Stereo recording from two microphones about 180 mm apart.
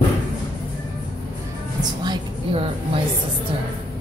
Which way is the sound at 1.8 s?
25° right (ahead or behind).